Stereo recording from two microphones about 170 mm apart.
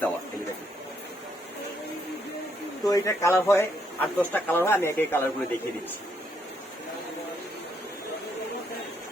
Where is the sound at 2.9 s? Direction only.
20° left (ahead or behind).